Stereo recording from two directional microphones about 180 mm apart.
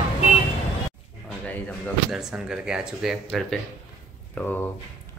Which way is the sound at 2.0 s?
5° right (ahead or behind).